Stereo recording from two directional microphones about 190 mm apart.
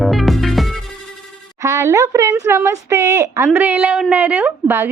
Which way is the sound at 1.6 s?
15° right (ahead or behind).